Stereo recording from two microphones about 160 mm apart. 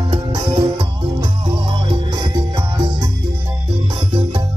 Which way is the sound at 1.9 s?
30° right (ahead or behind).